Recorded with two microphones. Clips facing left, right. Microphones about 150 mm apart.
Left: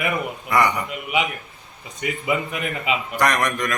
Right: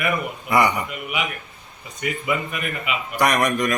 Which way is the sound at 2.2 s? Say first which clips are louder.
Left 3 dB; 25° left (ahead or behind).